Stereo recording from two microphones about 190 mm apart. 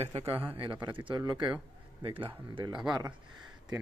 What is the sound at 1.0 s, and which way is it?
Speech, 20° right (ahead or behind).